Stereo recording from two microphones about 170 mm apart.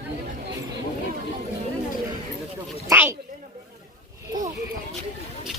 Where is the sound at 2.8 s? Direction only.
15° right (ahead or behind).